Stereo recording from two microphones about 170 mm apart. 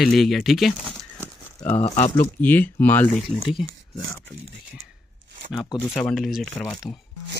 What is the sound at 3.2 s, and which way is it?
Speech, centre (ahead or behind).